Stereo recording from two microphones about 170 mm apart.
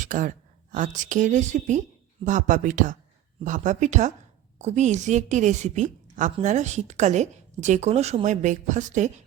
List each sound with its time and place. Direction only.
0.0 s a woman's voice: 50° right (ahead or behind)